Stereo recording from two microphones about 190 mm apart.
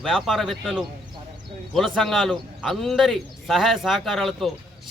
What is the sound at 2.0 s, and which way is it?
Speech, centre (ahead or behind).